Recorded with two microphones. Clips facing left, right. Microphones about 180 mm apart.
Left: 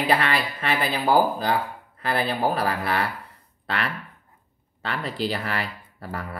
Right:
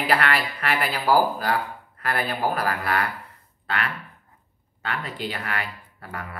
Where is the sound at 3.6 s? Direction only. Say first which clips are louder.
Even; 35° left (ahead or behind).